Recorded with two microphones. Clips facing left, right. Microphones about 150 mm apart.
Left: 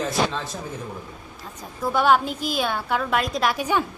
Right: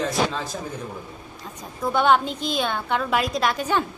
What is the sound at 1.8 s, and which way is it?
A man's voice, 5° left (ahead or behind).